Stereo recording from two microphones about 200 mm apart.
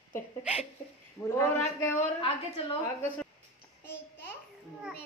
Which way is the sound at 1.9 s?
35° left (ahead or behind).